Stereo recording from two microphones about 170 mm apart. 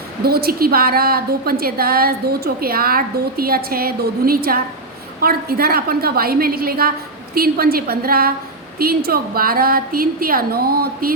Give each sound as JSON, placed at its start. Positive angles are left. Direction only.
{"t": 0.3, "sound": "a woman's voice", "side_deg": -65}